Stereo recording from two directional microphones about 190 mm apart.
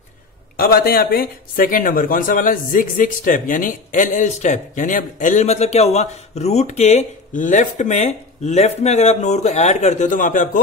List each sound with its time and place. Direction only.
0.6 s speech: 50° left (ahead or behind)